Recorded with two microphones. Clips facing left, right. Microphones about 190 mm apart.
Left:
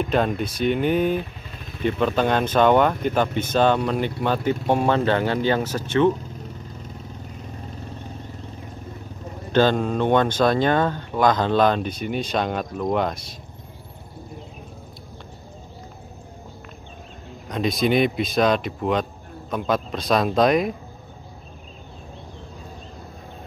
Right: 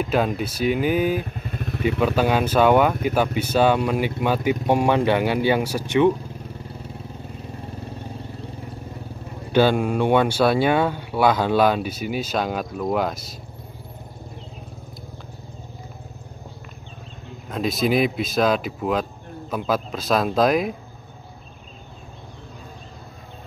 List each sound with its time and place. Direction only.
0.0 s speech: 5° right (ahead or behind)
1.5 s vehicle: 60° right (ahead or behind)
1.8 s speech: 5° right (ahead or behind)
9.5 s speech: 10° right (ahead or behind)
17.5 s speech: centre (ahead or behind)